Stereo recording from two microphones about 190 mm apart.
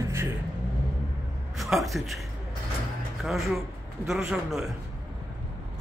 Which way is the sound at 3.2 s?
Centre (ahead or behind).